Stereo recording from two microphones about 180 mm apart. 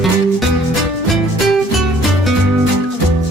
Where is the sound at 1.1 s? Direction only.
Centre (ahead or behind).